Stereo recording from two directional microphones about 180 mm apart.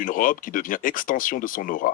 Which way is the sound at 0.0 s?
50° left (ahead or behind).